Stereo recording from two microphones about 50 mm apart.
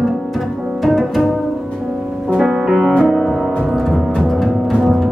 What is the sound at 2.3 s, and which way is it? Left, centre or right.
Music, centre.